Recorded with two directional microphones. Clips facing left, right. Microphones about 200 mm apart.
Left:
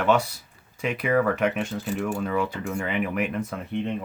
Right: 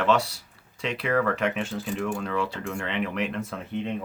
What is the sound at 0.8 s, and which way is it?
Speech, 15° left (ahead or behind).